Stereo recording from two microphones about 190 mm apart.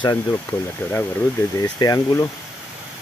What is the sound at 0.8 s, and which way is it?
Speech, 10° left (ahead or behind).